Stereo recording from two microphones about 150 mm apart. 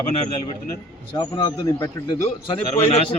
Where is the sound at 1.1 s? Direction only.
30° left (ahead or behind).